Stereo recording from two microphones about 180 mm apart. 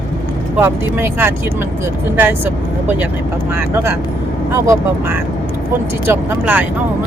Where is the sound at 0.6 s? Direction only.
10° right (ahead or behind).